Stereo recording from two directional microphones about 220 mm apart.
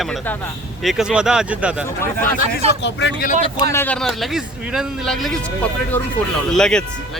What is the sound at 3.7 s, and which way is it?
A man's voice, 5° left (ahead or behind).